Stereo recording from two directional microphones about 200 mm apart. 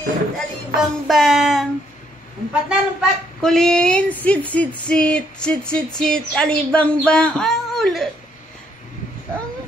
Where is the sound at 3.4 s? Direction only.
5° left (ahead or behind).